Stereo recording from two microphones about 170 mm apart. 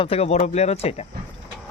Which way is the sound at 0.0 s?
35° left (ahead or behind).